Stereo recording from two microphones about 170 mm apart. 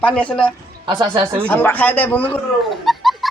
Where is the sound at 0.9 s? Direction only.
25° right (ahead or behind).